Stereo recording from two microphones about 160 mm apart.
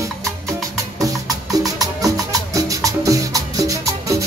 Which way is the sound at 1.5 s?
20° right (ahead or behind).